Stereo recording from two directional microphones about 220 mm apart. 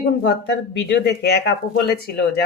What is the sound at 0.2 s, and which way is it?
Speech, 50° left (ahead or behind).